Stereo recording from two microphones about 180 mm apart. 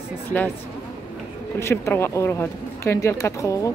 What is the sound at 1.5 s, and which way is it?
Speech, 15° left (ahead or behind).